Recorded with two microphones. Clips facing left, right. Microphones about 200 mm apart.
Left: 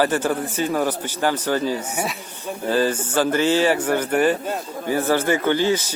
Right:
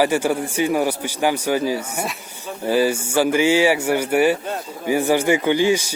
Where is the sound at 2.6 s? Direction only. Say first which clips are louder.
Right 2 dB; 10° right (ahead or behind).